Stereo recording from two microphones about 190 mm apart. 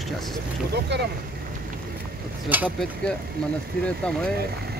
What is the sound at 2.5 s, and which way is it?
Speech, 10° right (ahead or behind).